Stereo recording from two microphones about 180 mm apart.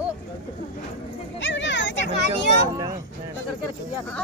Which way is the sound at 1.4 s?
90° left.